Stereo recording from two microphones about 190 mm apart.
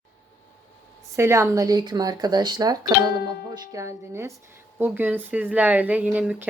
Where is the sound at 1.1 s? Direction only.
15° right (ahead or behind).